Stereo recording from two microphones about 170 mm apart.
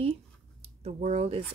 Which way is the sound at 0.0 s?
35° right (ahead or behind).